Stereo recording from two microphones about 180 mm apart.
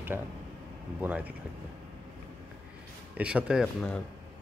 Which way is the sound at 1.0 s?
10° right (ahead or behind).